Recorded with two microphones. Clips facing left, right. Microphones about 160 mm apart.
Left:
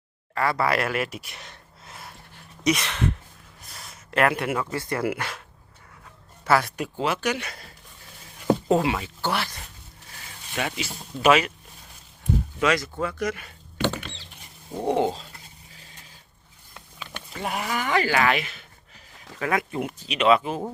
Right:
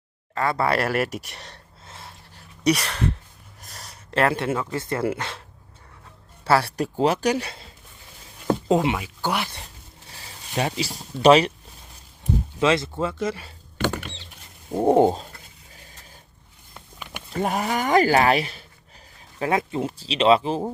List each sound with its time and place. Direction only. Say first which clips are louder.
0.3 s speech: right 1 dB; 25° right (ahead or behind)
2.3 s a sound: right 2 dB; 35° right (ahead or behind)
4.7 s speech: right 2 dB; 25° right (ahead or behind)
6.4 s speech: right 2 dB; 30° right (ahead or behind)
8.7 s speech: right 2 dB; 20° right (ahead or behind)
9.0 s speech: right 1 dB; 10° right (ahead or behind)
10.1 s speech: right 2 dB; 30° right (ahead or behind)
12.5 s speech: right 4 dB; 25° right (ahead or behind)
13.8 s rodents: right 1 dB; 10° right (ahead or behind)
14.8 s toothbrush: right 6 dB; 45° right (ahead or behind)
16.7 s a sound: right 1 dB; 10° right (ahead or behind)
17.3 s speech: right 5 dB; 40° right (ahead or behind)